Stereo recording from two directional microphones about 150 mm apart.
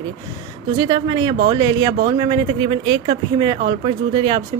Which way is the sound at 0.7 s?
30° right (ahead or behind).